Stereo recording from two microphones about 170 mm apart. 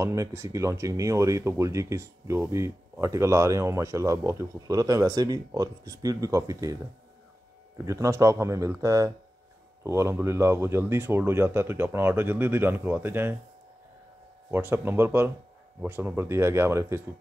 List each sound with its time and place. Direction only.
0.0 s speech: 15° right (ahead or behind)
14.5 s speech: 10° right (ahead or behind)